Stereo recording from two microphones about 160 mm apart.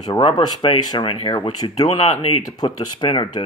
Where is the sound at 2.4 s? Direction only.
30° left (ahead or behind).